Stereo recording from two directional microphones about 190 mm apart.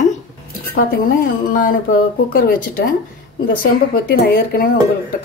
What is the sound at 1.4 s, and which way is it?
Music, 45° left (ahead or behind).